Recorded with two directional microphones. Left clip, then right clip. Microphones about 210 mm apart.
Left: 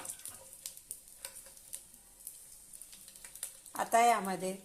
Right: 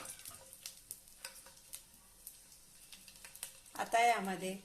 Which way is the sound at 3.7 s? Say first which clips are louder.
Left 4 dB; 25° left (ahead or behind).